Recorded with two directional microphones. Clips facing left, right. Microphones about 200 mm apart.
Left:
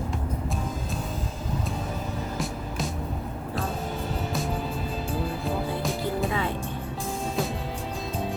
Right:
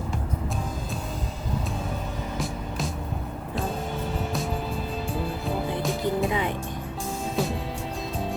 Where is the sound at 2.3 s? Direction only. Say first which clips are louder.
Even; centre (ahead or behind).